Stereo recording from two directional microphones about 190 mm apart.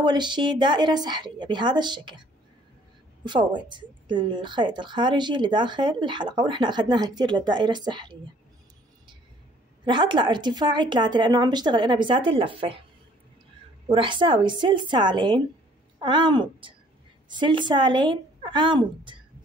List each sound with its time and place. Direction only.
0.0 s a woman's voice: 25° right (ahead or behind)
3.3 s a woman's voice: 25° right (ahead or behind)
9.8 s a woman's voice: 25° right (ahead or behind)
13.8 s a woman's voice: 25° right (ahead or behind)